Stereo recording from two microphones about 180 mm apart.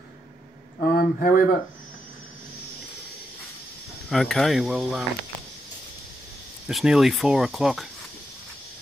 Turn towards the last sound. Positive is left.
turn(degrees=0)  # may be behind; listen again after turning